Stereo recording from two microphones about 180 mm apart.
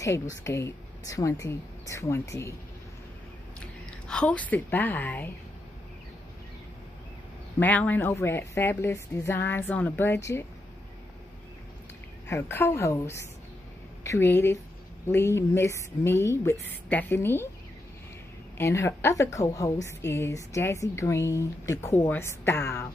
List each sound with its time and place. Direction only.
0.0 s a woman's voice: 15° left (ahead or behind)
4.1 s a woman's voice: 5° left (ahead or behind)
7.5 s a woman's voice: 10° left (ahead or behind)
12.3 s a woman's voice: 15° left (ahead or behind)
18.6 s a woman's voice: 15° left (ahead or behind)